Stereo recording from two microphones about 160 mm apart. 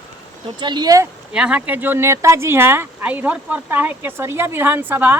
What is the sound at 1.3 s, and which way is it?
A woman's voice, 5° right (ahead or behind).